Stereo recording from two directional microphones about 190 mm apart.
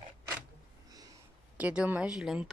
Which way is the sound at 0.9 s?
20° right (ahead or behind).